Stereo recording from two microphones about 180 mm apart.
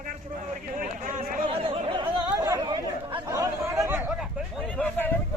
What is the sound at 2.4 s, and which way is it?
Chatter, 20° right (ahead or behind).